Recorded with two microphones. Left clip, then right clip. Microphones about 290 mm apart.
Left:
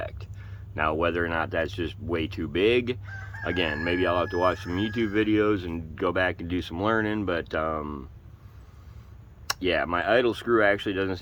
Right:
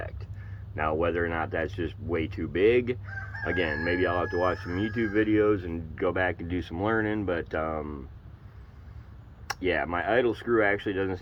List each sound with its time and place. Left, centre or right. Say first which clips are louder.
0.8 s speech: left 2 dB; centre
9.5 s speech: left 2 dB; centre